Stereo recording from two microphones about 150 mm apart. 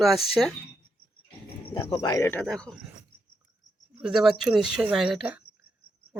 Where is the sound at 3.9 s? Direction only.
5° right (ahead or behind).